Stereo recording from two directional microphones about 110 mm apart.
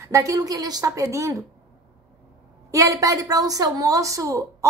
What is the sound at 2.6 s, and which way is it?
A woman's voice, 30° right (ahead or behind).